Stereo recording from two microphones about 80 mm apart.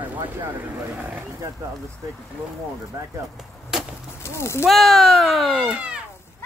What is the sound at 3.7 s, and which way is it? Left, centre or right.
Chop, centre.